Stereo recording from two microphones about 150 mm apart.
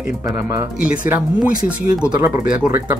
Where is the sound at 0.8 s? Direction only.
10° right (ahead or behind).